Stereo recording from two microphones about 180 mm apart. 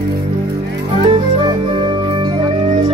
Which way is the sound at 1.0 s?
30° right (ahead or behind).